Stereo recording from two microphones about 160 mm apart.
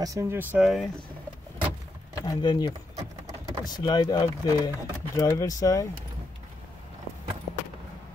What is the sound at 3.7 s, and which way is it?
Speech, 25° left (ahead or behind).